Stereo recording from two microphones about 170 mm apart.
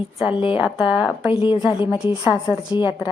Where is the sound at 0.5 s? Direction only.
5° right (ahead or behind).